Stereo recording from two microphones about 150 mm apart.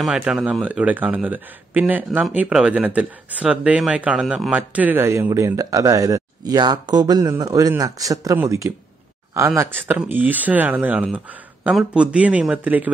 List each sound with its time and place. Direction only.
0.0 s speech: 5° right (ahead or behind)